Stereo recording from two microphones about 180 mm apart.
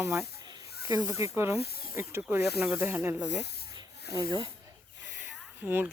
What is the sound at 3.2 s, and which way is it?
Speech, 75° left (ahead or behind).